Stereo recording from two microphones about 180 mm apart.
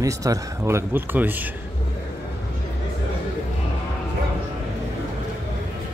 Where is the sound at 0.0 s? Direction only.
20° right (ahead or behind).